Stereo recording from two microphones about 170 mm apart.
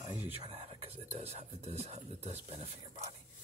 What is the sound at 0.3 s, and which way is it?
Speech, 35° right (ahead or behind).